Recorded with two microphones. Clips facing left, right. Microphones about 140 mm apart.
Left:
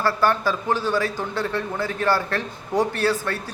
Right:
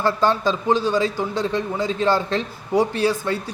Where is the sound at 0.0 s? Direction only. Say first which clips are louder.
Right 2 dB; 20° right (ahead or behind).